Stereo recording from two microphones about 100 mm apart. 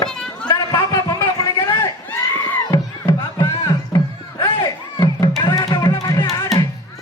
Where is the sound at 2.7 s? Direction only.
30° left (ahead or behind).